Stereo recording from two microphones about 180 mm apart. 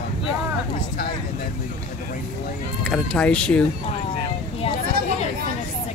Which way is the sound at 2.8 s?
5° left (ahead or behind).